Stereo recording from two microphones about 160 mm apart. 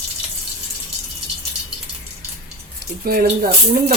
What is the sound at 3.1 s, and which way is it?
Speech, 70° right (ahead or behind).